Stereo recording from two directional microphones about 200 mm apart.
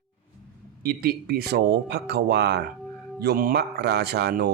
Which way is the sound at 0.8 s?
50° right (ahead or behind).